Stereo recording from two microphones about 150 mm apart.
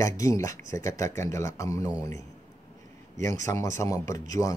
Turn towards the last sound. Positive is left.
turn(degrees=20)  # may be behind; listen again after turning